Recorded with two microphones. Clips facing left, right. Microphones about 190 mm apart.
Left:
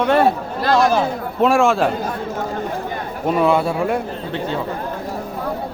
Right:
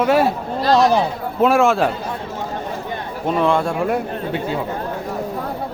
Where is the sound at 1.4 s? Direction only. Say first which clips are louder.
Even; centre (ahead or behind).